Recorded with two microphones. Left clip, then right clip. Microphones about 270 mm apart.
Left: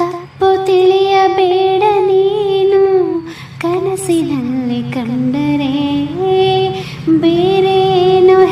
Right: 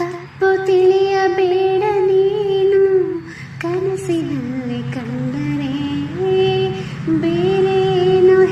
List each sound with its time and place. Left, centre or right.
0.0 s child singing: centre
2.5 s a sound: left
5.9 s music: centre